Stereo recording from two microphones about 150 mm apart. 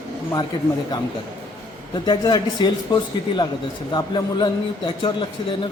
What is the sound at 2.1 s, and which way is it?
A man's voice, 30° left (ahead or behind).